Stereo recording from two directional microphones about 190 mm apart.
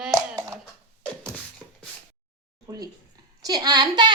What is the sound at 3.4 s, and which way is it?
Speech, 20° right (ahead or behind).